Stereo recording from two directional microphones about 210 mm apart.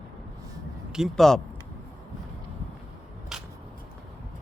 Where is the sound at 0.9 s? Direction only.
Centre (ahead or behind).